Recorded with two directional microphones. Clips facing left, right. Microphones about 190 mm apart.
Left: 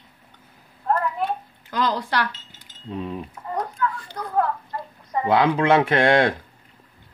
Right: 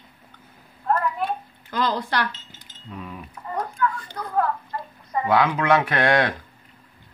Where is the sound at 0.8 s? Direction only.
20° left (ahead or behind).